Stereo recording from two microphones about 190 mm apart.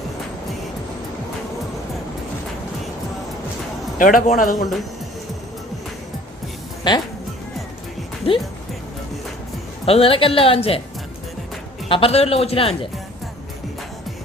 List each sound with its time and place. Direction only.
3.9 s a man's voice: 45° left (ahead or behind)
6.8 s a woman's voice: 20° left (ahead or behind)
9.8 s a woman's voice: 30° left (ahead or behind)
11.9 s speech: 30° left (ahead or behind)